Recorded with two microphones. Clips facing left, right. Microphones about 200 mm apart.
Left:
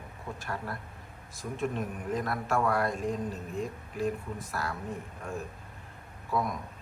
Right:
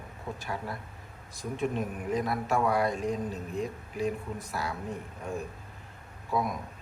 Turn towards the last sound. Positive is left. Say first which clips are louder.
# right 1 dB
turn(degrees=0)  # may be behind; listen again after turning